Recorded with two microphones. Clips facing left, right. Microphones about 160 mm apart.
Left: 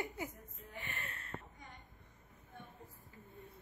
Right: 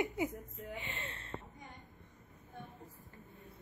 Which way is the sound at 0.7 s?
20° right (ahead or behind).